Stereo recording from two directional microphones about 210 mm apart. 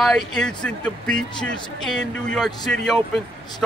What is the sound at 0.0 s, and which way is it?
Speech, centre (ahead or behind).